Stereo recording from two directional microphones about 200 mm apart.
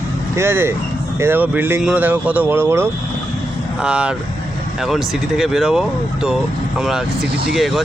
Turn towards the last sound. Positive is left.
turn(degrees=0)  # may be behind; listen again after turning